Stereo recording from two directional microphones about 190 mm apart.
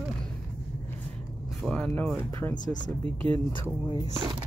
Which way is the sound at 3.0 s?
30° right (ahead or behind).